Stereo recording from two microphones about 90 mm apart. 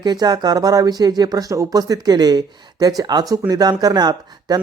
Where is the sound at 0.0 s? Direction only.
50° right (ahead or behind).